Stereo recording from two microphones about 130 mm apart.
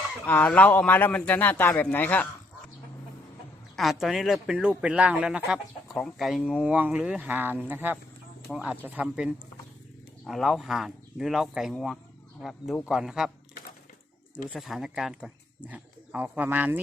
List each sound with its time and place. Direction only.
0.3 s a man's voice: 10° left (ahead or behind)
3.8 s speech: centre (ahead or behind)
14.5 s speech: 5° right (ahead or behind)